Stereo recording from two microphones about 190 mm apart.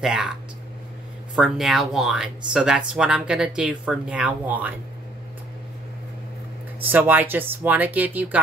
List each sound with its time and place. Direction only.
0.0 s speech: centre (ahead or behind)
1.3 s speech: centre (ahead or behind)
6.8 s speech: 10° right (ahead or behind)